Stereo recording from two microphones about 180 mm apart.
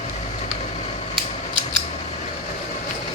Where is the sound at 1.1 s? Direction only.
25° right (ahead or behind).